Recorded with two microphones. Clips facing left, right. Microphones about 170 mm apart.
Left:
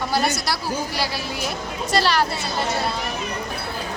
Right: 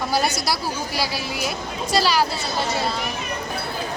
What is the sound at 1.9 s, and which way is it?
Speech, 5° right (ahead or behind).